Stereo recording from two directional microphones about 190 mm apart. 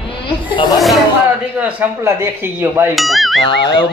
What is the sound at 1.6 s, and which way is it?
A man's voice, 10° right (ahead or behind).